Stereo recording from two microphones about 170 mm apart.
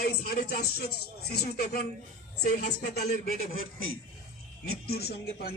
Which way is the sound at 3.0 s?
60° left (ahead or behind).